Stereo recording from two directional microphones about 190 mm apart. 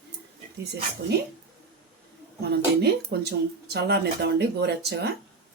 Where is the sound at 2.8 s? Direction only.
60° right (ahead or behind).